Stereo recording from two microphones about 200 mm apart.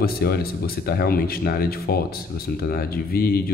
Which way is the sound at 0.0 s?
50° left (ahead or behind).